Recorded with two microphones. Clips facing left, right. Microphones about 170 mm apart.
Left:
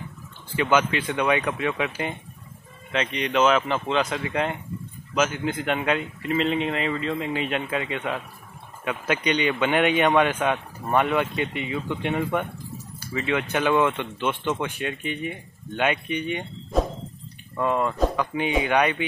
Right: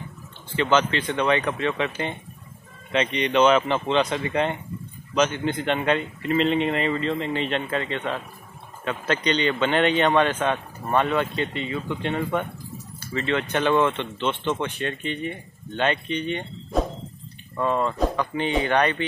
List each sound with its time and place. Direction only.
0.6 s speech: 10° left (ahead or behind)
16.7 s a sound: centre (ahead or behind)
17.6 s speech: 10° left (ahead or behind)